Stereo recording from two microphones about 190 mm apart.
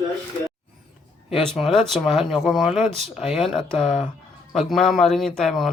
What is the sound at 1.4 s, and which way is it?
Speech, centre (ahead or behind).